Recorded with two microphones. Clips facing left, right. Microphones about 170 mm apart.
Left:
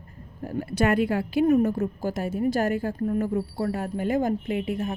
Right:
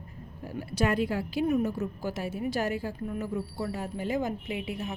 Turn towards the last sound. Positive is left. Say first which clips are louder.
# left 6 dB
turn(degrees=50)  # may be behind; listen again after turning